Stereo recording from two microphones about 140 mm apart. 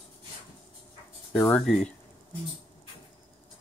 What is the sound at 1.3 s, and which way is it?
Speech, 15° left (ahead or behind).